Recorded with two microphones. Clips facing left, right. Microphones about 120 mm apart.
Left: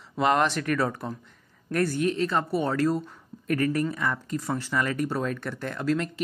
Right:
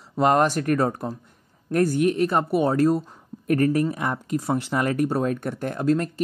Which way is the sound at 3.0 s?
45° right (ahead or behind).